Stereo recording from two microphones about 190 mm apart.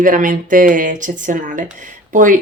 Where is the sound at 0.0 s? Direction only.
45° right (ahead or behind).